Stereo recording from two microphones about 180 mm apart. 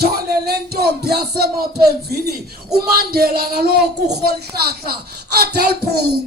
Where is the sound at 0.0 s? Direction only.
60° right (ahead or behind).